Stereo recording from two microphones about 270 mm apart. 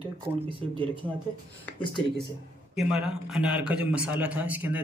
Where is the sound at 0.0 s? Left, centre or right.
Centre.